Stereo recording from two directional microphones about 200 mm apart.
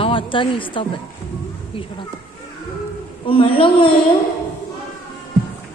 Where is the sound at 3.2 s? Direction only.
25° left (ahead or behind).